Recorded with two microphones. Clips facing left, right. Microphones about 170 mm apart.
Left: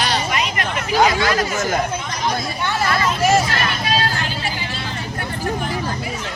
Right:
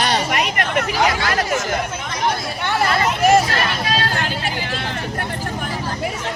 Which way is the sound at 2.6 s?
65° right (ahead or behind).